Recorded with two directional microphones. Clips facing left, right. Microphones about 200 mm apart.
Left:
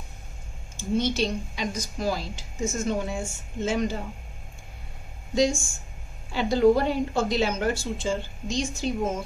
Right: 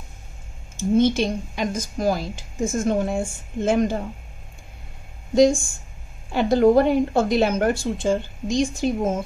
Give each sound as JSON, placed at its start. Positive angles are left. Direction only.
{"t": 0.9, "sound": "a woman's voice", "side_deg": -50}
{"t": 5.3, "sound": "a woman's voice", "side_deg": -55}